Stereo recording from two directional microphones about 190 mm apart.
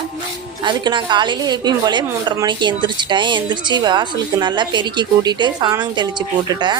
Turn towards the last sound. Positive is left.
turn(degrees=-20)  # may be behind; listen again after turning